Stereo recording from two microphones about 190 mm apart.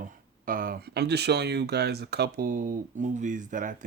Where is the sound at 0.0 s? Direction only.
50° right (ahead or behind).